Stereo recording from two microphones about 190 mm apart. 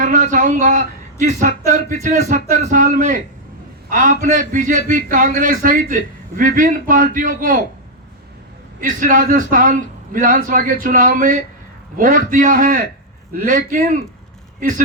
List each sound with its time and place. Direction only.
0.0 s a man's voice: 40° right (ahead or behind)
8.8 s a man's voice: 45° right (ahead or behind)